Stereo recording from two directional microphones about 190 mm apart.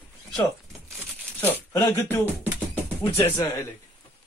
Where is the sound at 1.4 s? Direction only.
15° left (ahead or behind).